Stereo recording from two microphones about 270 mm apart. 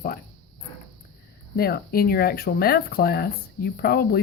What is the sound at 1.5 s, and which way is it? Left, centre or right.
Speech, left.